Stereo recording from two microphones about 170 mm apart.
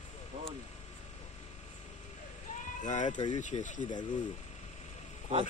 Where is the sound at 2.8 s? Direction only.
45° left (ahead or behind).